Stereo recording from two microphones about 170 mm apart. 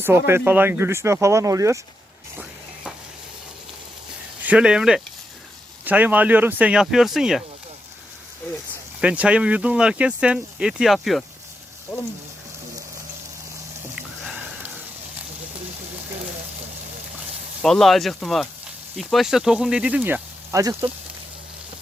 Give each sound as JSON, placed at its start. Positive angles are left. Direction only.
{"t": 0.0, "sound": "speech", "side_deg": -15}
{"t": 4.4, "sound": "speech", "side_deg": -5}
{"t": 9.0, "sound": "speech", "side_deg": -5}
{"t": 13.9, "sound": "a sound", "side_deg": -5}
{"t": 17.6, "sound": "speech", "side_deg": 0}